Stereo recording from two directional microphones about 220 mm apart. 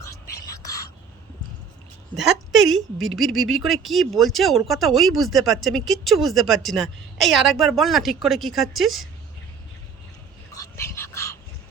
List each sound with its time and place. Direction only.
0.5 s whispering: 15° left (ahead or behind)
2.6 s a woman's voice: 65° right (ahead or behind)
3.2 s speech: centre (ahead or behind)
10.5 s dog: 15° left (ahead or behind)